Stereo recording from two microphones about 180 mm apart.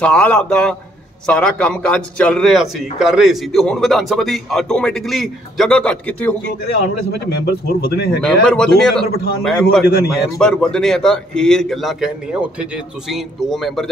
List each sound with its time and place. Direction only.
0.0 s a man's voice: 5° left (ahead or behind)
7.1 s speech: 65° left (ahead or behind)
8.2 s a man's voice: 5° left (ahead or behind)